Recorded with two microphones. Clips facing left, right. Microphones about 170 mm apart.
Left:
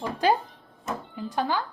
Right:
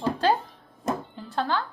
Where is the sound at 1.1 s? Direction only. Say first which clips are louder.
Even; 10° left (ahead or behind).